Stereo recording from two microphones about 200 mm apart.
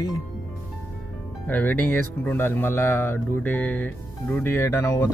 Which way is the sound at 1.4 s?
10° left (ahead or behind).